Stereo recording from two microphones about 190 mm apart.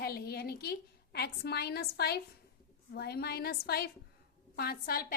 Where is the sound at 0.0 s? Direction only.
55° left (ahead or behind).